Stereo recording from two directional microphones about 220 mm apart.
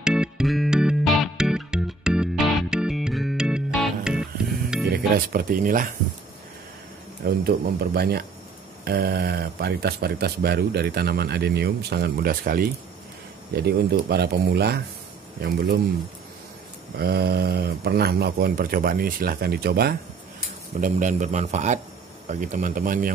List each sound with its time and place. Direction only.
0.0 s music: 5° right (ahead or behind)
4.9 s speech: 40° right (ahead or behind)
7.2 s speech: 45° right (ahead or behind)
16.9 s speech: 45° right (ahead or behind)
20.8 s speech: 35° right (ahead or behind)